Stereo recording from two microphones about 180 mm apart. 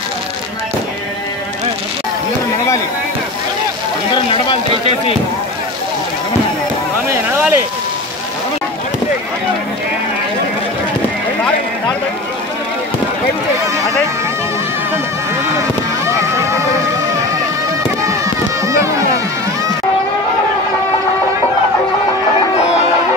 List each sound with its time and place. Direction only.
4.1 s speech: 30° left (ahead or behind)
7.1 s a sound: 10° right (ahead or behind)
16.1 s music: 15° right (ahead or behind)
18.7 s music: 15° right (ahead or behind)
22.6 s music: 35° left (ahead or behind)